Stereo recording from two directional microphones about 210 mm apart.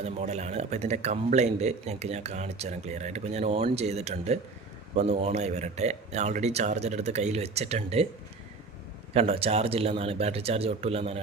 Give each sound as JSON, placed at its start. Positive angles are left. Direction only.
{"t": 0.0, "sound": "speech", "side_deg": -30}
{"t": 9.1, "sound": "speech", "side_deg": -25}